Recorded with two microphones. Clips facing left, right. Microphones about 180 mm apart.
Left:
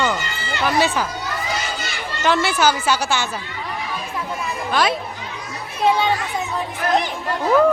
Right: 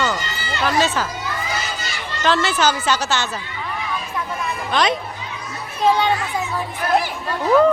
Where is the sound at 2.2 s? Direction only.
15° left (ahead or behind).